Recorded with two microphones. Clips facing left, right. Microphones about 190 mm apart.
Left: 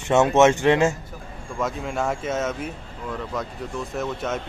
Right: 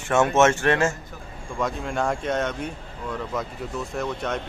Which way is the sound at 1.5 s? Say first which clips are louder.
Even; centre (ahead or behind).